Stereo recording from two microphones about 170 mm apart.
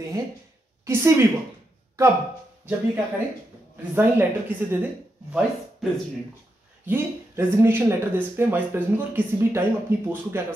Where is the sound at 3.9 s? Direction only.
10° right (ahead or behind).